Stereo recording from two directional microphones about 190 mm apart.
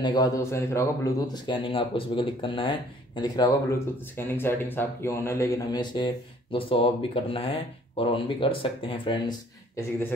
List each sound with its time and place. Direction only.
0.0 s speech: 20° left (ahead or behind)
9.8 s speech: 10° left (ahead or behind)